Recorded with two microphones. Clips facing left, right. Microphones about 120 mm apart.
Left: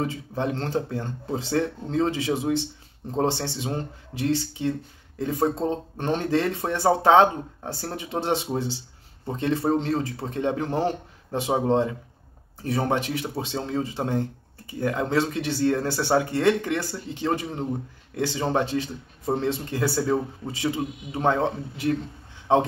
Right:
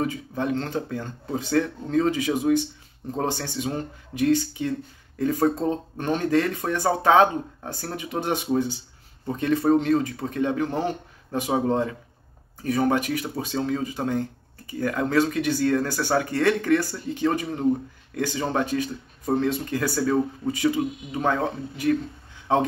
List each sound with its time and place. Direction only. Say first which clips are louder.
0.0 s speech: right 1 dB; 30° left (ahead or behind)